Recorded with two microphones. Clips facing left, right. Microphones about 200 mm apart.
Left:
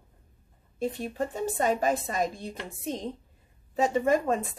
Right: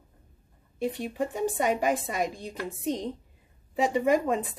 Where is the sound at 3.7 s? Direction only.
15° right (ahead or behind).